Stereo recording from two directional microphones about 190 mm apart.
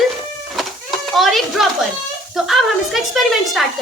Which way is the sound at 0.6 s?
Centre (ahead or behind).